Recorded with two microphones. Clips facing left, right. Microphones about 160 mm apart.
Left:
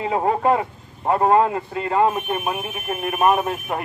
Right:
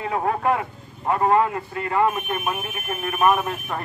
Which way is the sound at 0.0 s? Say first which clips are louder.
Left 3 dB; 25° left (ahead or behind).